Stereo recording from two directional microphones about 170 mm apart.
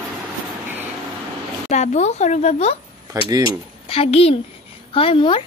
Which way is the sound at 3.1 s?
20° right (ahead or behind).